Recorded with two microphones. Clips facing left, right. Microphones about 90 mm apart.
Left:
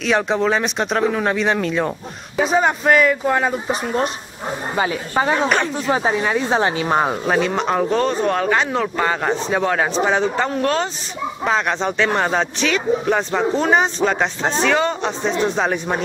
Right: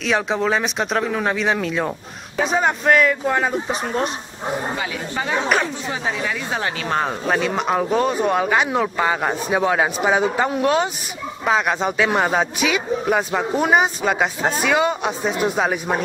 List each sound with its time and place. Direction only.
0.0 s speech: centre (ahead or behind)
4.7 s a woman's voice: 40° left (ahead or behind)
6.9 s speech: 15° left (ahead or behind)
7.2 s speech: centre (ahead or behind)